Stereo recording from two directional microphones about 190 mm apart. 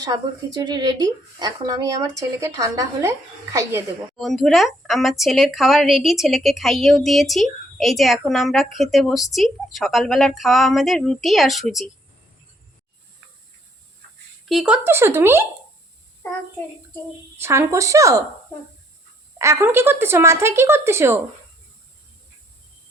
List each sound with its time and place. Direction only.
0.0 s a woman's voice: 20° right (ahead or behind)
4.2 s a woman's voice: centre (ahead or behind)
14.4 s a woman's voice: centre (ahead or behind)
17.4 s a woman's voice: 15° right (ahead or behind)
19.4 s a woman's voice: 15° right (ahead or behind)